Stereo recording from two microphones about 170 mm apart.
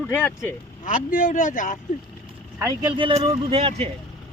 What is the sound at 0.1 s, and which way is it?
Speech, 10° left (ahead or behind).